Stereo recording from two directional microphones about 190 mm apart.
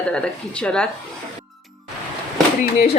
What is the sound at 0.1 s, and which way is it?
Speech, 5° left (ahead or behind).